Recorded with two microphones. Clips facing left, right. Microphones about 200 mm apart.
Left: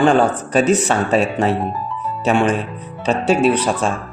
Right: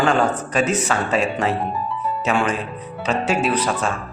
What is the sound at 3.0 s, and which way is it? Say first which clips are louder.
Speech: left 6 dB; 30° left (ahead or behind).